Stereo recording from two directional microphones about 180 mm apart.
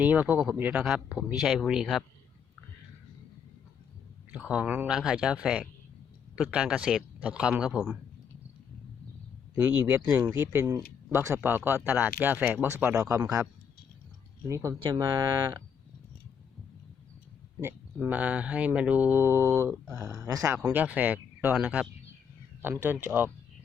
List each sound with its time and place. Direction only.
0.0 s speech: 10° right (ahead or behind)
4.3 s speech: 5° right (ahead or behind)
9.6 s speech: 10° right (ahead or behind)
14.4 s speech: 15° right (ahead or behind)
18.0 s speech: 10° right (ahead or behind)
19.9 s speech: centre (ahead or behind)
20.1 s speech: 20° right (ahead or behind)